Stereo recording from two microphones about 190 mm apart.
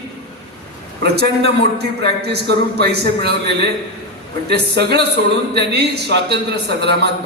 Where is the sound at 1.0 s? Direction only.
60° right (ahead or behind).